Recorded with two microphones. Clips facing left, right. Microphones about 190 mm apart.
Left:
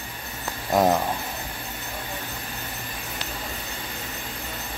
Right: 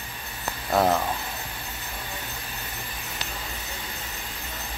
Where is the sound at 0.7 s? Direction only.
15° left (ahead or behind).